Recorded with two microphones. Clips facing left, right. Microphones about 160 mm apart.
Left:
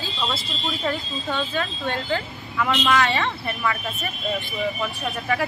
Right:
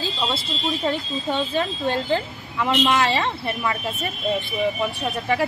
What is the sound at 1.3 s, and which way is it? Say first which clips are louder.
A woman's voice: right 3 dB; 30° right (ahead or behind).